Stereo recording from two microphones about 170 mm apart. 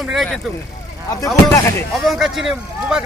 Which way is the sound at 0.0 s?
Centre (ahead or behind).